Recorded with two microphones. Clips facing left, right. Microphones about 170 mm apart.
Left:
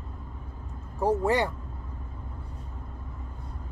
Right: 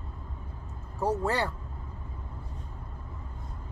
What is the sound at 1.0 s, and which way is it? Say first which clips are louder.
Speech: left 4 dB; 15° left (ahead or behind).